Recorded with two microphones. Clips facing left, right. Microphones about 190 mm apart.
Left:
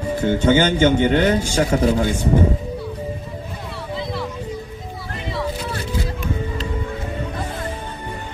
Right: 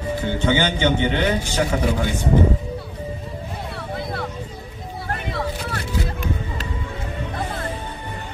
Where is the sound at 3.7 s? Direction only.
60° right (ahead or behind).